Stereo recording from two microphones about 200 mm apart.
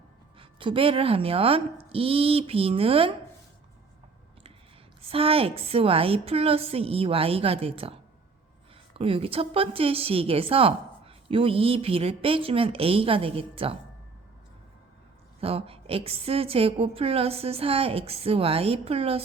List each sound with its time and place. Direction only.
0.3 s a woman's voice: 25° right (ahead or behind)
5.0 s a woman's voice: 30° right (ahead or behind)
15.4 s a woman's voice: 30° right (ahead or behind)